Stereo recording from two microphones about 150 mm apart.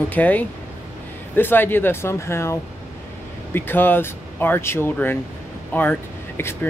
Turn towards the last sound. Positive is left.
turn(degrees=15)  # may be behind; listen again after turning